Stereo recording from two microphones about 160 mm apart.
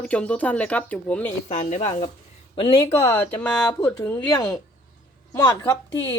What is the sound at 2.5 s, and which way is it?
Speech, 35° left (ahead or behind).